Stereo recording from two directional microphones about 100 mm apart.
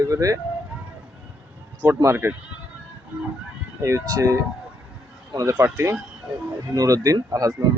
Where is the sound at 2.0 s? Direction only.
25° right (ahead or behind).